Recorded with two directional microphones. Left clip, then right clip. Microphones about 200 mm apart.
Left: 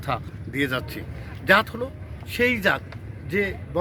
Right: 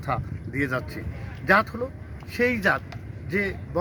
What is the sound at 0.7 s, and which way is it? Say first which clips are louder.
Speech: left 1 dB; centre (ahead or behind).